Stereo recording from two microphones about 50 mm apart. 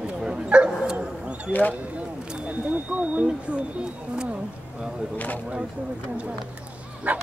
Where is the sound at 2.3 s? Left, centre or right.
Right.